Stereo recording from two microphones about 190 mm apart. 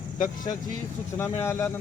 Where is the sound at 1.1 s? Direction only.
15° left (ahead or behind).